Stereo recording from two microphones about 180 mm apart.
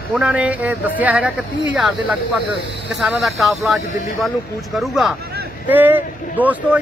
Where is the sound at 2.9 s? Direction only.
Centre (ahead or behind).